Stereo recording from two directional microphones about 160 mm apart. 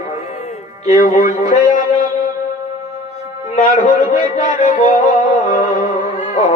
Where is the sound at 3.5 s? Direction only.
45° left (ahead or behind).